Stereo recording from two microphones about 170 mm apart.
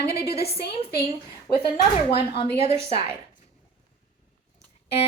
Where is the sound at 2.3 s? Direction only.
35° left (ahead or behind).